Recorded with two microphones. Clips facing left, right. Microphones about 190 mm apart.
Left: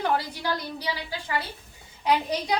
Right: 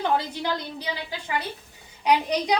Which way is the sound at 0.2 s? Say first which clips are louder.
Right 2 dB; 20° right (ahead or behind).